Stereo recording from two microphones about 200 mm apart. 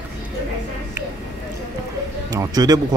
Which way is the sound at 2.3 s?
15° right (ahead or behind).